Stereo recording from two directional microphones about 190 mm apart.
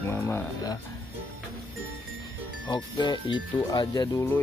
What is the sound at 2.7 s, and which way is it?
Speech, 25° left (ahead or behind).